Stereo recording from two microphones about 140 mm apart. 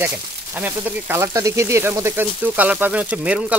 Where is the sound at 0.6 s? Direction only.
10° right (ahead or behind).